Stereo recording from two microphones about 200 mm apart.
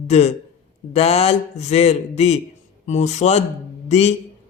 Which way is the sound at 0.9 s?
30° left (ahead or behind).